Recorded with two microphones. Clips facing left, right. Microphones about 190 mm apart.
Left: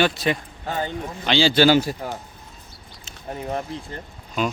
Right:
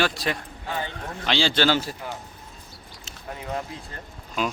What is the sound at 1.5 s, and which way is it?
Speech, 10° left (ahead or behind).